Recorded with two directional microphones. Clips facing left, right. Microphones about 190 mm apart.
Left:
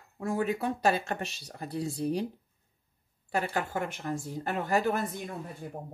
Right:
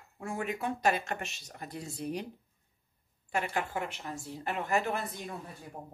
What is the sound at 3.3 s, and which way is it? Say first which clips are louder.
Speech: left 2 dB; 40° left (ahead or behind).